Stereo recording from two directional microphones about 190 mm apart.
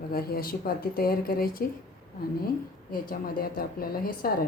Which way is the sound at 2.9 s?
50° left (ahead or behind).